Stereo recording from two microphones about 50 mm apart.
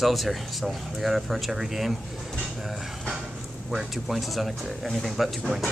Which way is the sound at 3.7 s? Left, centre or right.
Centre.